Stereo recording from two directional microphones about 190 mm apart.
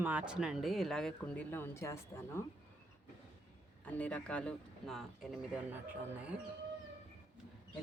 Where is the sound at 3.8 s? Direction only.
5° left (ahead or behind).